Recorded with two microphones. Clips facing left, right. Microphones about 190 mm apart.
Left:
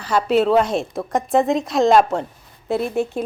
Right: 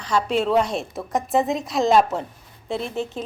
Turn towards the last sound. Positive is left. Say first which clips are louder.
# left 6 dB
turn(degrees=10)  # may be behind; listen again after turning